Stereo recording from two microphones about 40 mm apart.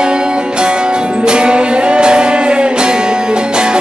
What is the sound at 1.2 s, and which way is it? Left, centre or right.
Music, right.